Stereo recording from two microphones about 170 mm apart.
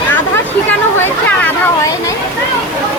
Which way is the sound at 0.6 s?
10° left (ahead or behind).